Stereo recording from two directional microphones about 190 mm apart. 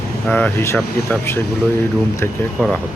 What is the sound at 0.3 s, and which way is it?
Speech, 10° left (ahead or behind).